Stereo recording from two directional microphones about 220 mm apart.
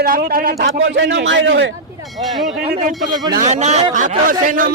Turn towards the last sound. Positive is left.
turn(degrees=-35)  # may be behind; listen again after turning